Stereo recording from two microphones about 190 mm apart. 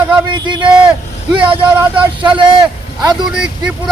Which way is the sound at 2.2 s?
25° right (ahead or behind).